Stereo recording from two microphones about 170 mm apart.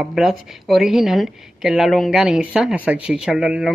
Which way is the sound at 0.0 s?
Centre (ahead or behind).